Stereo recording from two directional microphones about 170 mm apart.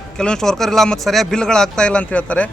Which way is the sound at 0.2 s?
5° left (ahead or behind).